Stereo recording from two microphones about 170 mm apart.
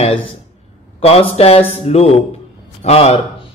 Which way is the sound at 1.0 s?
35° left (ahead or behind).